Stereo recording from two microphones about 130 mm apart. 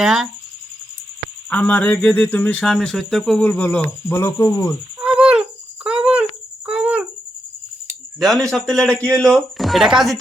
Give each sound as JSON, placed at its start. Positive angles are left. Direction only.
{"t": 0.0, "sound": "speech", "side_deg": 0}
{"t": 1.5, "sound": "speech", "side_deg": 10}
{"t": 4.1, "sound": "speech", "side_deg": 25}
{"t": 4.9, "sound": "a sound", "side_deg": -10}
{"t": 6.7, "sound": "insect", "side_deg": -10}
{"t": 8.2, "sound": "speech", "side_deg": 0}